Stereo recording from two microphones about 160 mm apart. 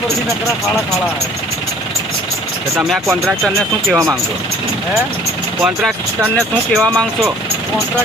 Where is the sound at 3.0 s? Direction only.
15° right (ahead or behind).